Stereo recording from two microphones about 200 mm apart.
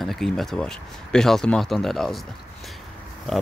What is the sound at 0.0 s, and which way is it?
Speech, centre (ahead or behind).